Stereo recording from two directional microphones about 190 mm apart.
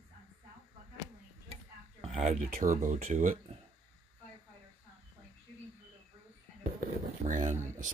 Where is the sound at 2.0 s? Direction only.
35° right (ahead or behind).